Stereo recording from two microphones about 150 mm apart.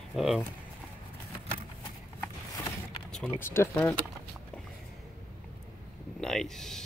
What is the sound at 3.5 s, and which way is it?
Speech, 15° left (ahead or behind).